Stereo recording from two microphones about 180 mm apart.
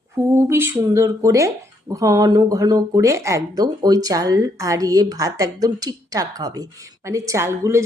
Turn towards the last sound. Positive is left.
turn(degrees=-15)  # may be behind; listen again after turning